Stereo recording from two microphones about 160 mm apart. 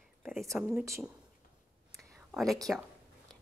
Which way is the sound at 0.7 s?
20° right (ahead or behind).